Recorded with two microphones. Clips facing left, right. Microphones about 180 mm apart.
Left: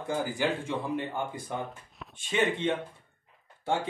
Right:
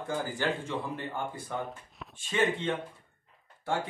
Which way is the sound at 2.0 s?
Centre (ahead or behind).